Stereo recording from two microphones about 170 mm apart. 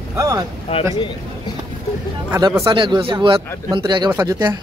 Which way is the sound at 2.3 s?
20° right (ahead or behind).